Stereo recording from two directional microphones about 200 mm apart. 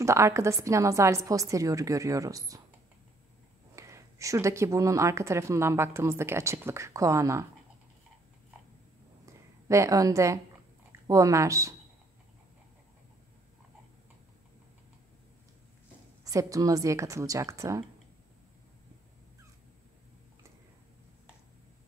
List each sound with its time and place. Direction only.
0.0 s speech: 15° right (ahead or behind)
3.7 s speech: 15° right (ahead or behind)
9.2 s a sound: 15° right (ahead or behind)
10.9 s speech: 15° right (ahead or behind)
16.3 s speech: 15° right (ahead or behind)